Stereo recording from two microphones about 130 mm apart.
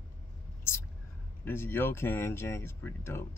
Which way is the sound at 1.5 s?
15° left (ahead or behind).